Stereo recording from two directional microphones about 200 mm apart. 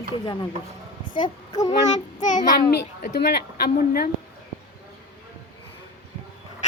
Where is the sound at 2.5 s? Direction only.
45° left (ahead or behind).